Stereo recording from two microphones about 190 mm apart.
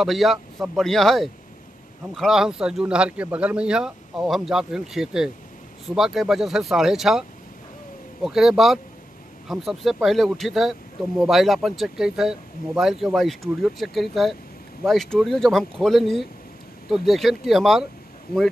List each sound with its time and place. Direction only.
0.0 s speech: centre (ahead or behind)
18.3 s speech: 55° left (ahead or behind)